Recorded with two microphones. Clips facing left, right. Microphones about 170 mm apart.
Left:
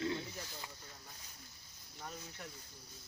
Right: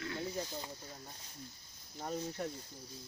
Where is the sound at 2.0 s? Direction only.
40° right (ahead or behind).